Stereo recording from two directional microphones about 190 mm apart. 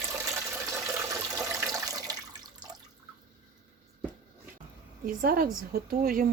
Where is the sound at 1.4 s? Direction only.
15° right (ahead or behind).